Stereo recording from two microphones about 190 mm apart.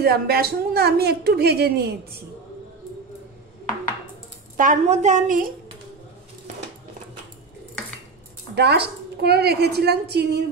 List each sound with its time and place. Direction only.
0.0 s a woman's voice: 55° right (ahead or behind)
4.6 s a woman's voice: 40° right (ahead or behind)
8.5 s a woman's voice: 60° right (ahead or behind)